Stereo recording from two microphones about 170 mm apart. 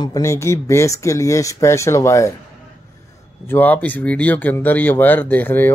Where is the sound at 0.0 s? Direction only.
20° left (ahead or behind).